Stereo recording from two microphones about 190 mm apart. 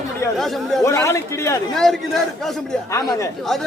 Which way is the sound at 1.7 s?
Centre (ahead or behind).